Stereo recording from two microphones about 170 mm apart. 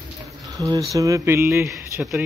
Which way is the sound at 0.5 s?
20° right (ahead or behind).